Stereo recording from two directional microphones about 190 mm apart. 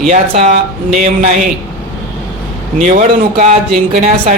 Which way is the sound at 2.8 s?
45° right (ahead or behind).